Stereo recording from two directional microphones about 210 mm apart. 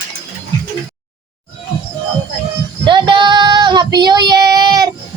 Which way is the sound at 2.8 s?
20° right (ahead or behind).